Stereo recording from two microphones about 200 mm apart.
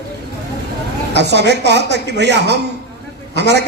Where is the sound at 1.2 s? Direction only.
60° right (ahead or behind).